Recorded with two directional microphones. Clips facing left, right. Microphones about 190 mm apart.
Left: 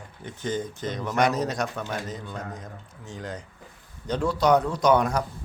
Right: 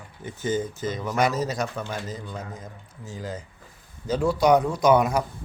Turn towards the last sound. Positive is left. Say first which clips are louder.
# right 2 dB
turn(degrees=-10)  # may be behind; listen again after turning